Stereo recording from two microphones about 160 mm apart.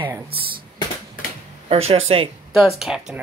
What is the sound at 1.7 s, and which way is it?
Speech, 40° right (ahead or behind).